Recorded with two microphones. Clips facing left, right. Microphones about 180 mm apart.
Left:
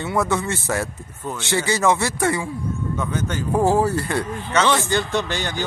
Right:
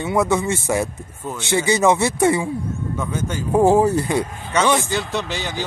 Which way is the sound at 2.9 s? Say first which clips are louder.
Right 1 dB; 10° right (ahead or behind).